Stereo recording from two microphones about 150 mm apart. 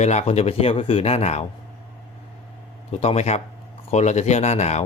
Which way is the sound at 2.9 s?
45° left (ahead or behind).